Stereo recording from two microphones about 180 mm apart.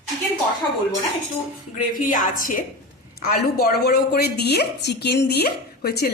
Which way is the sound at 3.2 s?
60° left (ahead or behind).